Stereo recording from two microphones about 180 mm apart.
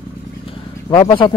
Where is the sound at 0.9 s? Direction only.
25° left (ahead or behind).